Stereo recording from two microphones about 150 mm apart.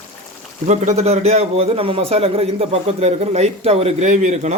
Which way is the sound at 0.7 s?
50° right (ahead or behind).